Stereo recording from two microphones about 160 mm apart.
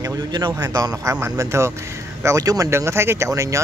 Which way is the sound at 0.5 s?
20° right (ahead or behind).